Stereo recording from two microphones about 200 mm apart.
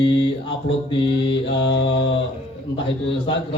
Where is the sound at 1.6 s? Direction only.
65° left (ahead or behind).